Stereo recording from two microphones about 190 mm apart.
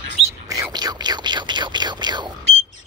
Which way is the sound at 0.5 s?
20° right (ahead or behind).